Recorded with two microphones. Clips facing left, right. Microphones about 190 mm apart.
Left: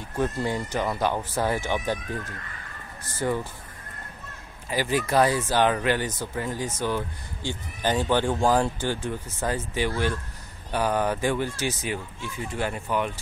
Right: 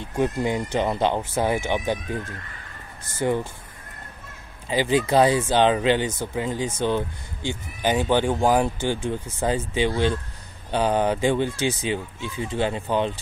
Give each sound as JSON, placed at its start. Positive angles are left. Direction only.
{"t": 0.1, "sound": "speech", "side_deg": -15}
{"t": 4.6, "sound": "speech", "side_deg": -20}